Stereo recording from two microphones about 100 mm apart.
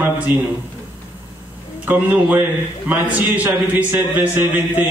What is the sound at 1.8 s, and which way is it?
A man's voice, 20° right (ahead or behind).